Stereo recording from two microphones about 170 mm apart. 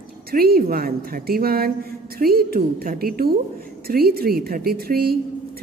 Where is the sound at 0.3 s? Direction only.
60° right (ahead or behind).